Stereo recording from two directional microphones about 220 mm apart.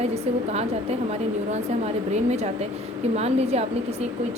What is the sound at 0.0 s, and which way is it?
A woman's voice, 30° right (ahead or behind).